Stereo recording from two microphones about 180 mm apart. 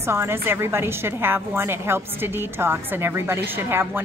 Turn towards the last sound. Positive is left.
turn(degrees=-10)  # may be behind; listen again after turning